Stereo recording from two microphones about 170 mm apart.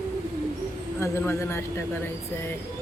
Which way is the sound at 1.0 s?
15° left (ahead or behind).